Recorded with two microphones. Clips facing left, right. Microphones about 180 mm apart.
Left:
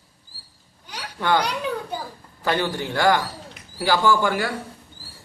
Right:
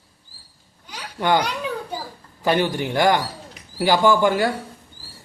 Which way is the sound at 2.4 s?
15° right (ahead or behind).